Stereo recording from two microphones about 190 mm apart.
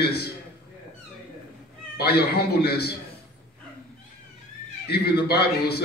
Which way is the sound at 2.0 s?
60° left (ahead or behind).